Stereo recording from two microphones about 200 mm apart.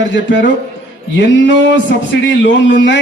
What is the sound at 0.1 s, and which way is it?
A man's voice, 65° left (ahead or behind).